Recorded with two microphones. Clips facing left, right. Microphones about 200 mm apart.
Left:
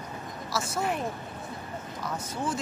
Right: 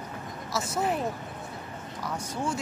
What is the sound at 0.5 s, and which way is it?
Speech, 20° right (ahead or behind).